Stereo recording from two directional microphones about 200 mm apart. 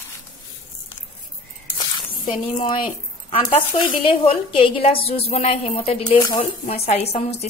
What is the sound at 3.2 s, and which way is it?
A woman's voice, 30° left (ahead or behind).